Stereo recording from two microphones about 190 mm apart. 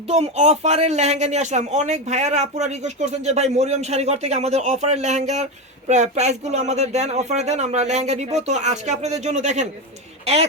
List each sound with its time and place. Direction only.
0.1 s speech: 35° right (ahead or behind)